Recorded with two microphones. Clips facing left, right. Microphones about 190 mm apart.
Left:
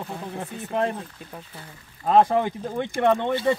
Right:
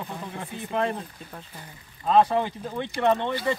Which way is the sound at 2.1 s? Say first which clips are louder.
Left 2 dB; 50° left (ahead or behind).